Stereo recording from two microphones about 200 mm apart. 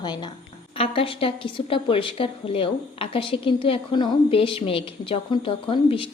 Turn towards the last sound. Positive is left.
turn(degrees=25)  # may be behind; listen again after turning